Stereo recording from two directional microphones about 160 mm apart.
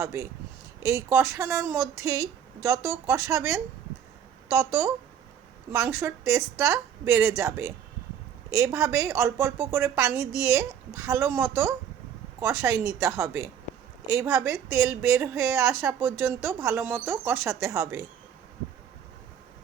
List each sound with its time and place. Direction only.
0.0 s a woman's voice: 20° right (ahead or behind)